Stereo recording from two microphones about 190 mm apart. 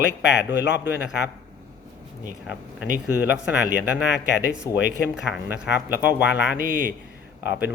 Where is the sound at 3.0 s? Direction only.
5° right (ahead or behind).